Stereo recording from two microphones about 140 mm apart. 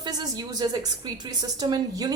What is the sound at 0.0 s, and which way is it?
Speech, 30° right (ahead or behind).